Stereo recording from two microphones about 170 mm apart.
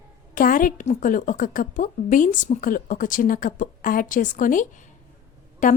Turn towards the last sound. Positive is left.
turn(degrees=50)  # may be behind; listen again after turning